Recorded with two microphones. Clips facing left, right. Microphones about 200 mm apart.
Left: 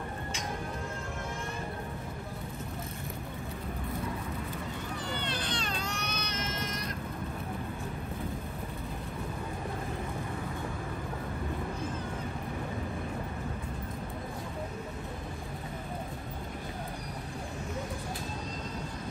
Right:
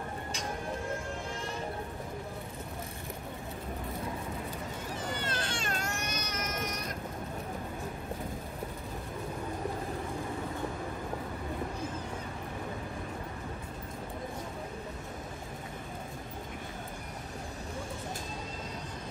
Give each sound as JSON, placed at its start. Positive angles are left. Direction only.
{"t": 5.2, "sound": "baby cry", "side_deg": -45}